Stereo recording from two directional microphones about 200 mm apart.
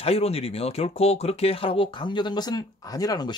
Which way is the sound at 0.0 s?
30° left (ahead or behind).